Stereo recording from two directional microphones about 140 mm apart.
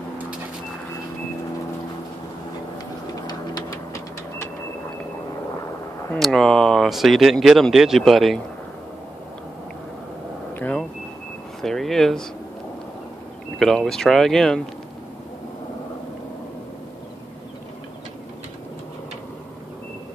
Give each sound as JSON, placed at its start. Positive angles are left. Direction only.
{"t": 3.3, "sound": "printer", "side_deg": 25}
{"t": 6.1, "sound": "speech", "side_deg": 0}
{"t": 10.5, "sound": "vehicle", "side_deg": 10}
{"t": 11.6, "sound": "speech", "side_deg": 5}
{"t": 13.6, "sound": "speech", "side_deg": 5}